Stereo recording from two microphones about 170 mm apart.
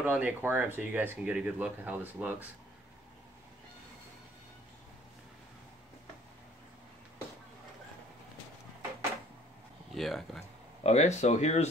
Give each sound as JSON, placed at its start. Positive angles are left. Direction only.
{"t": 0.0, "sound": "speech", "side_deg": -10}
{"t": 9.9, "sound": "speech", "side_deg": 0}
{"t": 10.8, "sound": "speech", "side_deg": 40}